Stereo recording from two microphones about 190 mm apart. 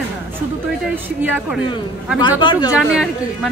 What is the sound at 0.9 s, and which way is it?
Speech, 10° right (ahead or behind).